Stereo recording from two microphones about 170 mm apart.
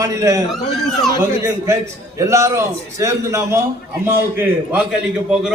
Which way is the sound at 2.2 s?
20° right (ahead or behind).